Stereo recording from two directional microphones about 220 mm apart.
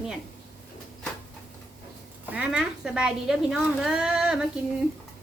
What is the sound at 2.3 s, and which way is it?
A woman's voice, 5° right (ahead or behind).